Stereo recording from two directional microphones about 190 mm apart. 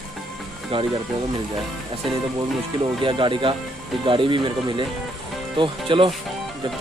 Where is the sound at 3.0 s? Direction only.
25° right (ahead or behind).